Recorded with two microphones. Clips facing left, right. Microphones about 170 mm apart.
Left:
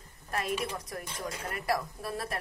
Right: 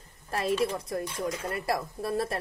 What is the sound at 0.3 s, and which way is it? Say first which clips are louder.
A woman's voice: right 6 dB; 30° right (ahead or behind).